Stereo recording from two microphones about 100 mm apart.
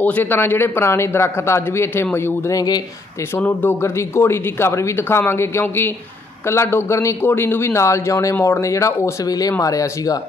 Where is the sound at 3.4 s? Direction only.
15° left (ahead or behind).